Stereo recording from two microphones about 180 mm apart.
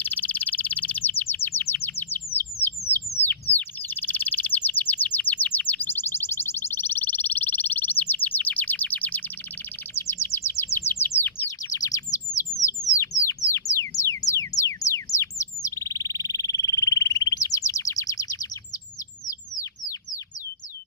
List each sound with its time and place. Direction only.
0.0 s chirp: 10° left (ahead or behind)
2.4 s bird: 35° left (ahead or behind)
3.5 s bird: 10° left (ahead or behind)
12.4 s a sound: 20° left (ahead or behind)
14.8 s frog: 15° left (ahead or behind)